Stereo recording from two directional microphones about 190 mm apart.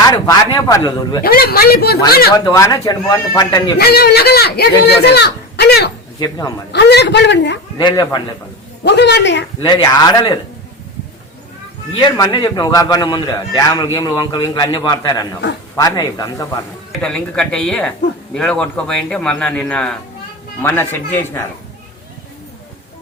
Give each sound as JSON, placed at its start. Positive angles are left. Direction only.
{"t": 0.1, "sound": "a man's voice", "side_deg": 20}
{"t": 1.2, "sound": "speech", "side_deg": 50}
{"t": 2.3, "sound": "a man's voice", "side_deg": 20}
{"t": 3.8, "sound": "speech", "side_deg": 55}
{"t": 6.1, "sound": "a man's voice", "side_deg": 20}
{"t": 6.7, "sound": "speech", "side_deg": 60}
{"t": 7.8, "sound": "a man's voice", "side_deg": 20}
{"t": 8.8, "sound": "speech", "side_deg": 65}
{"t": 9.6, "sound": "a man's voice", "side_deg": 20}
{"t": 11.9, "sound": "a man's voice", "side_deg": 20}
{"t": 17.0, "sound": "a man's voice", "side_deg": 5}